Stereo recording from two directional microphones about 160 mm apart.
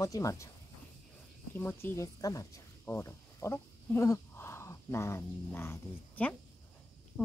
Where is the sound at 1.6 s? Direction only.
15° left (ahead or behind).